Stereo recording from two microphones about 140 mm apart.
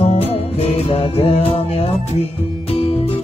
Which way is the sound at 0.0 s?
45° left (ahead or behind).